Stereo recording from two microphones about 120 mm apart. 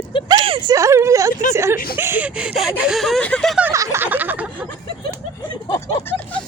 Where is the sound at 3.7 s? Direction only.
25° right (ahead or behind).